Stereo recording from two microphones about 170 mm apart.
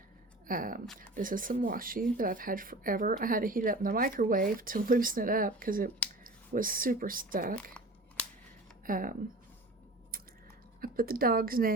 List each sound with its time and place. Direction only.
0.4 s speech: 55° right (ahead or behind)
7.5 s scissors: 5° left (ahead or behind)
8.9 s speech: 55° right (ahead or behind)
10.8 s speech: 60° right (ahead or behind)